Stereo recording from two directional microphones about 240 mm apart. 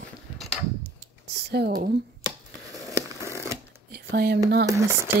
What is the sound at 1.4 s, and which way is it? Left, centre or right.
Speech, right.